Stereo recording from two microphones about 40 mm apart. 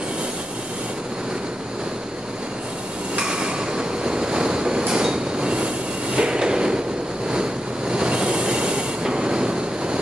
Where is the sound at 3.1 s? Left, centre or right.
Right.